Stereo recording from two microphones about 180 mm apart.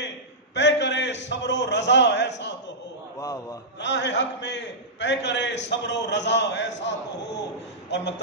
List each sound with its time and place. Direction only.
0.6 s a sound: 75° left (ahead or behind)
3.2 s a man's voice: 20° left (ahead or behind)
3.8 s a man's voice: 75° left (ahead or behind)